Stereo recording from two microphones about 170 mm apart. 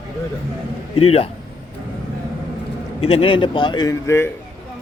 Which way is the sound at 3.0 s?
35° left (ahead or behind).